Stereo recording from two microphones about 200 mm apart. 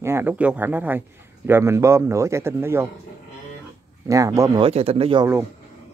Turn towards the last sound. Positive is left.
turn(degrees=-25)  # may be behind; listen again after turning